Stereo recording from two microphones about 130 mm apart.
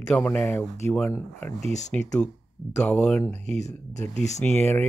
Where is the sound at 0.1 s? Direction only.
10° left (ahead or behind).